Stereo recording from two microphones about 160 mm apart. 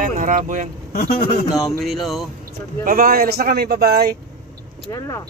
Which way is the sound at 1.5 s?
Centre (ahead or behind).